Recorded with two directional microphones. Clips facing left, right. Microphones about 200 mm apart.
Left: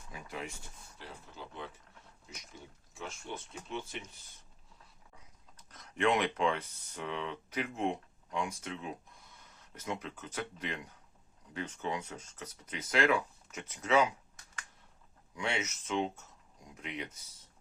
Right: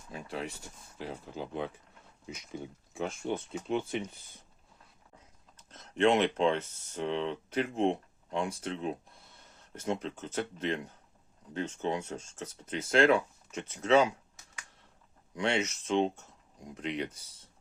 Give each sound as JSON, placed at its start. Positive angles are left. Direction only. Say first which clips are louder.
{"t": 0.1, "sound": "speech", "louder": "right 5 dB", "side_deg": -30}
{"t": 1.3, "sound": "speech", "louder": "right 9 dB", "side_deg": -55}
{"t": 5.5, "sound": "speech", "louder": "right 6 dB", "side_deg": -25}
{"t": 15.4, "sound": "speech", "louder": "right 6 dB", "side_deg": -30}